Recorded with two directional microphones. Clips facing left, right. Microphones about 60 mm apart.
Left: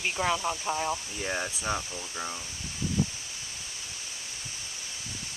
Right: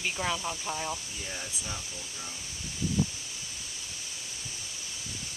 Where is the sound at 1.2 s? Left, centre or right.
Left.